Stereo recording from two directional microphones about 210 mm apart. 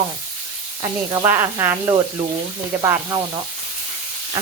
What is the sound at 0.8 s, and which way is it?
Speech, 15° right (ahead or behind).